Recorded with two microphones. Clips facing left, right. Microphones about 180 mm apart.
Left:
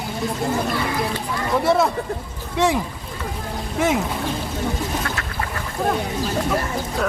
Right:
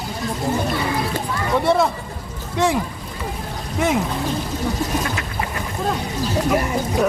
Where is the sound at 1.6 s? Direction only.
Centre (ahead or behind).